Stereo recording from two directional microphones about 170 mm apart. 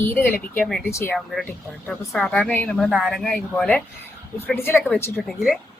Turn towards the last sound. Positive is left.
turn(degrees=0)  # may be behind; listen again after turning